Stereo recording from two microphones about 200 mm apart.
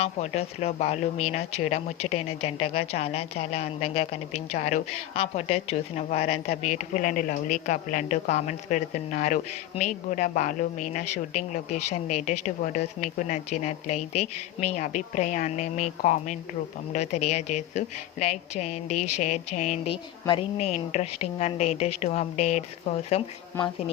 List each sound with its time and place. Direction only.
0.0 s a woman's voice: 30° left (ahead or behind)
23.5 s speech: 10° left (ahead or behind)